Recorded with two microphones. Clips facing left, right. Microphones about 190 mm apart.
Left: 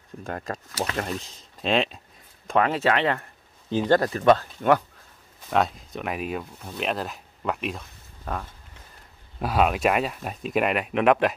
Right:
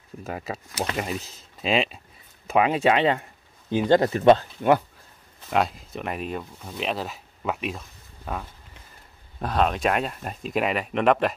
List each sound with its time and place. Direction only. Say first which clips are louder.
0.2 s speech: even; 5° right (ahead or behind); by 4.5 s 25° right (ahead or behind)
5.5 s speech: even; centre (ahead or behind)
9.4 s speech: left 1 dB; 5° left (ahead or behind)